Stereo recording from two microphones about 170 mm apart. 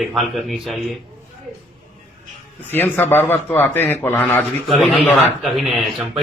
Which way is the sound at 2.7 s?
10° left (ahead or behind).